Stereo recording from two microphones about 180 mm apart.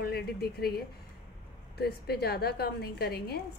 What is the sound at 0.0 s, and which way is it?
A woman's voice, 60° left (ahead or behind).